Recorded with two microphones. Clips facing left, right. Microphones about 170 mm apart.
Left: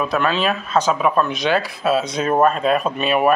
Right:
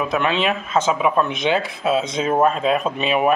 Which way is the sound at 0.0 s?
20° right (ahead or behind).